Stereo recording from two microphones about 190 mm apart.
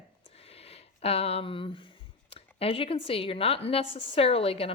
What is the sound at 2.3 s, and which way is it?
Speech, 30° left (ahead or behind).